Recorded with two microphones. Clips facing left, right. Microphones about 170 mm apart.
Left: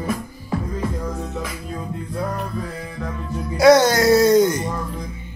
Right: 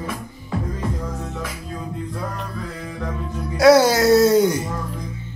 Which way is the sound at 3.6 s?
5° right (ahead or behind).